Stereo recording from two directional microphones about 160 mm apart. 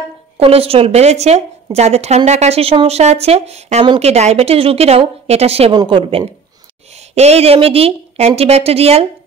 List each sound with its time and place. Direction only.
0.4 s a woman's voice: 35° right (ahead or behind)
3.8 s speech: 30° right (ahead or behind)
4.1 s a woman's voice: 40° right (ahead or behind)